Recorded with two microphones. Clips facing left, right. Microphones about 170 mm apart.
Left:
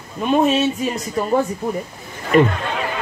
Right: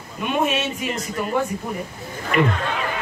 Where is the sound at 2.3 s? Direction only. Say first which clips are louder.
Left 6 dB; 35° left (ahead or behind).